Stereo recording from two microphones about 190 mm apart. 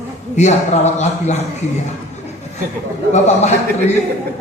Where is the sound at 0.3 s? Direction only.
35° left (ahead or behind).